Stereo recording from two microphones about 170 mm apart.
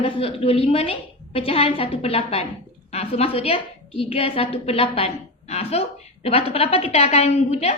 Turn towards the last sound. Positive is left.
turn(degrees=40)  # may be behind; listen again after turning